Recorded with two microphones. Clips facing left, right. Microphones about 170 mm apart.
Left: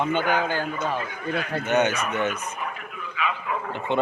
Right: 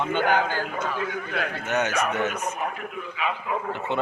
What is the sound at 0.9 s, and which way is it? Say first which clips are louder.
Speech: right 2 dB; 75° right (ahead or behind).